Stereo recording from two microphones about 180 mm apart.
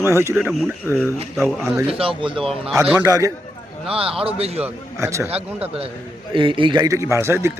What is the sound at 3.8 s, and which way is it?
Speech, 30° right (ahead or behind).